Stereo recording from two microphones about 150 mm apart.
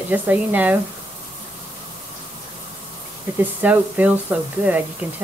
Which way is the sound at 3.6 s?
10° right (ahead or behind).